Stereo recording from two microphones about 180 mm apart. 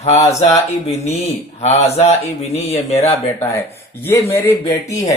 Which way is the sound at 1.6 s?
35° left (ahead or behind).